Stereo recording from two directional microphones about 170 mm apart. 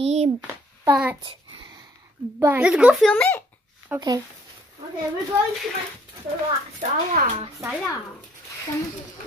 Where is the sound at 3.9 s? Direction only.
10° right (ahead or behind).